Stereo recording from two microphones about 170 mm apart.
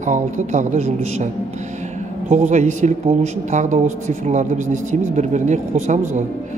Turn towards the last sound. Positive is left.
turn(degrees=-45)  # may be behind; listen again after turning